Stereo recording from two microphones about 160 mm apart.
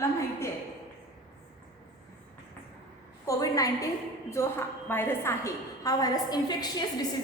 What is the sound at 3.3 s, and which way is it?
A woman's voice, 20° left (ahead or behind).